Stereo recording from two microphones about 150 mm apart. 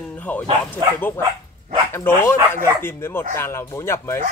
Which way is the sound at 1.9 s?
15° left (ahead or behind).